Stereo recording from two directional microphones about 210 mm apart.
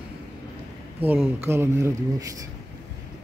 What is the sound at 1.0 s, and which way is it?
Speech, 10° right (ahead or behind).